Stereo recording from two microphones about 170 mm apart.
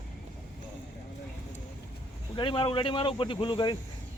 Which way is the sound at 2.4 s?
30° left (ahead or behind).